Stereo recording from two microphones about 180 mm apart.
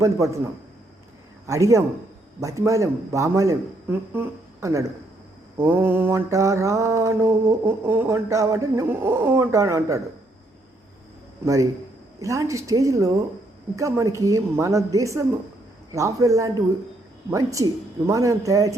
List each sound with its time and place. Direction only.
0.0 s mantra: 15° right (ahead or behind)
1.5 s mantra: 15° right (ahead or behind)
11.4 s mantra: 15° right (ahead or behind)